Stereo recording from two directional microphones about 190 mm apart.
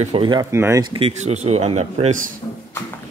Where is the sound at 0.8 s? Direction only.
35° right (ahead or behind).